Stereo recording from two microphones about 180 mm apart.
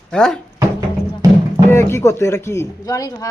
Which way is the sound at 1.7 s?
15° left (ahead or behind).